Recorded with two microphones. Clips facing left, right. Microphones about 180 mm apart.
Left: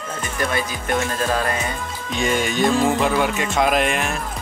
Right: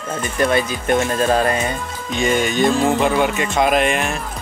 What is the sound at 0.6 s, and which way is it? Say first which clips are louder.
Music: right 5 dB; 25° right (ahead or behind).